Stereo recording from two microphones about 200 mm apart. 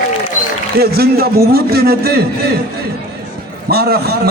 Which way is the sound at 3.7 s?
50° right (ahead or behind).